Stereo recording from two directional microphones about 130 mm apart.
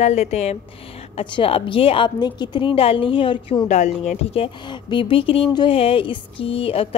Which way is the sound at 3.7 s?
65° left (ahead or behind).